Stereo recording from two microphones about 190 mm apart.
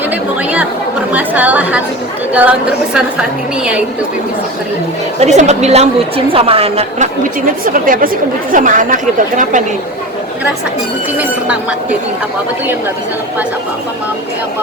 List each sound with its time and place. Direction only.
1.1 s a woman's voice: 10° right (ahead or behind)
5.2 s a woman's voice: 35° right (ahead or behind)